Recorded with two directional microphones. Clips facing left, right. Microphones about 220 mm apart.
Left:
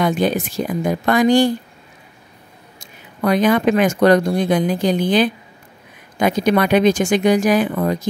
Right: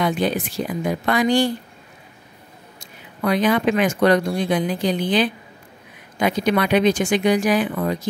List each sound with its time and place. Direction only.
0.0 s speech: 45° left (ahead or behind)
3.2 s speech: 45° left (ahead or behind)